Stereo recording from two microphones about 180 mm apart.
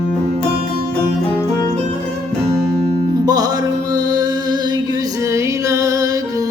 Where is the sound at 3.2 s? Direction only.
20° right (ahead or behind).